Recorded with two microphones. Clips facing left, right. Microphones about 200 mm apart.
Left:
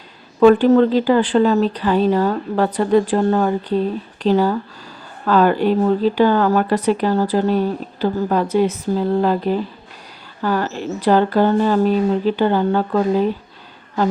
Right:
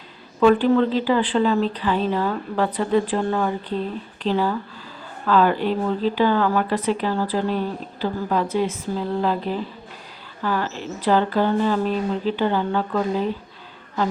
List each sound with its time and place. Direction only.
0.3 s speech: 45° left (ahead or behind)